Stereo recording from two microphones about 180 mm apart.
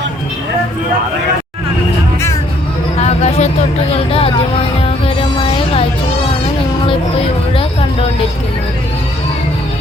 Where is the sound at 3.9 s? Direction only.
30° left (ahead or behind).